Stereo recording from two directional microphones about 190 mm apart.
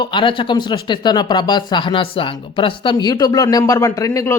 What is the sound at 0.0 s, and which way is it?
Speech, 25° left (ahead or behind).